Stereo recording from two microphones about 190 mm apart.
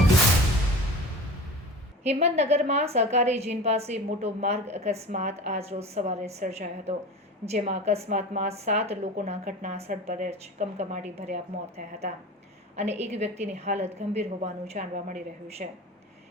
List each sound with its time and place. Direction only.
2.0 s a woman's voice: 35° right (ahead or behind)